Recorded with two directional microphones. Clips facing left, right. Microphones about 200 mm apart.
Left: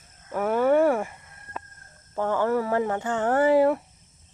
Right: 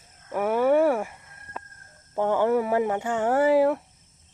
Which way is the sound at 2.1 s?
15° right (ahead or behind).